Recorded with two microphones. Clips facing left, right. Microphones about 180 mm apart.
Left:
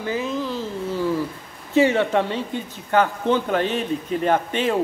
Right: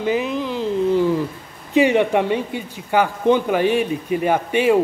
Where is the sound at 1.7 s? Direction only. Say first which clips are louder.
Right 2 dB; 15° right (ahead or behind).